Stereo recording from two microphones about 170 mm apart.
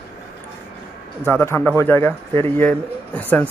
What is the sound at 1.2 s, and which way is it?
Speech, 15° left (ahead or behind).